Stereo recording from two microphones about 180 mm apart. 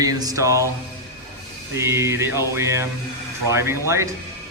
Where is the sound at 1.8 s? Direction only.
15° right (ahead or behind).